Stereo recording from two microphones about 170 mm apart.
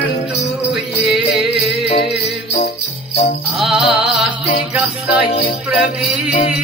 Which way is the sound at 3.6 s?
Centre (ahead or behind).